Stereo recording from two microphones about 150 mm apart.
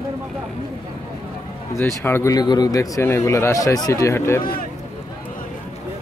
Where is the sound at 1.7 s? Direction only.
15° left (ahead or behind).